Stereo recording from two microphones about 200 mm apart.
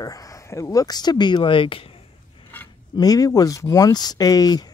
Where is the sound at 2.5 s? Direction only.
10° left (ahead or behind).